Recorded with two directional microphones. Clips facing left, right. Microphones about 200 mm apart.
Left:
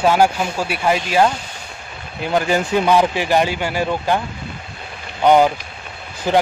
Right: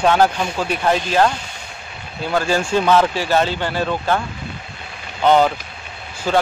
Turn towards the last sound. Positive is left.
turn(degrees=15)  # may be behind; listen again after turning